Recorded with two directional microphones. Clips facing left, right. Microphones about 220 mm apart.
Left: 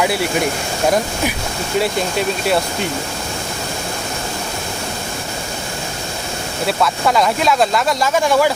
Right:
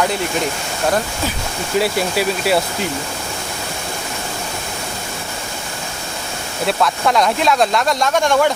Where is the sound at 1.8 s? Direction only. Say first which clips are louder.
Right 1 dB; 5° right (ahead or behind).